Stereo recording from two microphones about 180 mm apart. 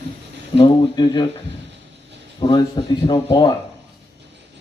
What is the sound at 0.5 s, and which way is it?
Speech, 25° left (ahead or behind).